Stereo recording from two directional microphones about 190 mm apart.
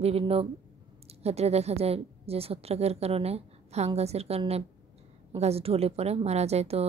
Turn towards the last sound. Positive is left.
turn(degrees=-35)  # may be behind; listen again after turning